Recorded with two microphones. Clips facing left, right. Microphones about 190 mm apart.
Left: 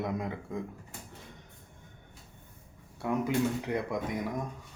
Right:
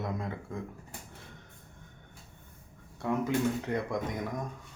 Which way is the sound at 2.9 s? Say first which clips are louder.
Left 1 dB; 10° left (ahead or behind).